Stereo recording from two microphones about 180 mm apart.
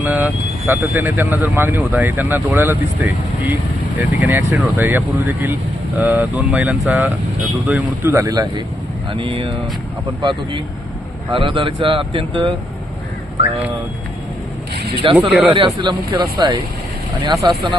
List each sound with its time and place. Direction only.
0.0 s speech: 10° right (ahead or behind); by 12.5 s 30° right (ahead or behind)
15.3 s speech: 5° right (ahead or behind)
15.5 s speech: 25° right (ahead or behind)
17.3 s speech: centre (ahead or behind)